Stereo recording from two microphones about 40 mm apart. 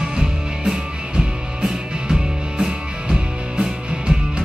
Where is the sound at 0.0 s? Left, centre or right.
Centre.